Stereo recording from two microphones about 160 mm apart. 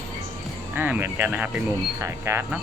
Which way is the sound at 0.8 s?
10° right (ahead or behind).